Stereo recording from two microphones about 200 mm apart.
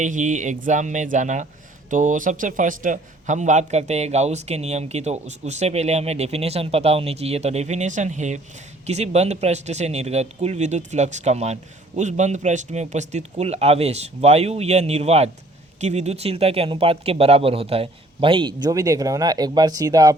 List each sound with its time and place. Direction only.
0.0 s a man's voice: 40° right (ahead or behind); by 20.1 s 15° right (ahead or behind)